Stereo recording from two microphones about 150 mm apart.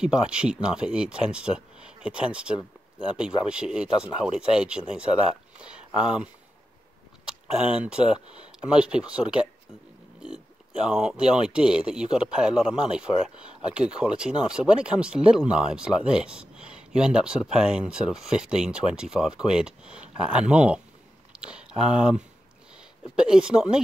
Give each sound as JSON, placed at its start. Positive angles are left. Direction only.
{"t": 0.0, "sound": "speech", "side_deg": -5}
{"t": 7.2, "sound": "speech", "side_deg": -5}
{"t": 21.3, "sound": "a sound", "side_deg": -5}
{"t": 23.1, "sound": "speech", "side_deg": -5}